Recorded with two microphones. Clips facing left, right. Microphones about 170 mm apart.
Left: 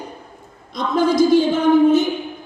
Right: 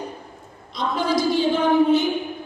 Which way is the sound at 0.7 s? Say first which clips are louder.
Left 5 dB; 45° left (ahead or behind).